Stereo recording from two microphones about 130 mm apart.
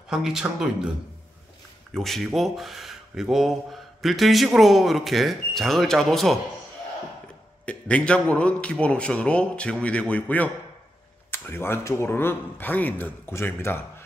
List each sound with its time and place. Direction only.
0.1 s speech: 5° right (ahead or behind)
2.0 s speech: centre (ahead or behind)
7.6 s a man's voice: 10° left (ahead or behind)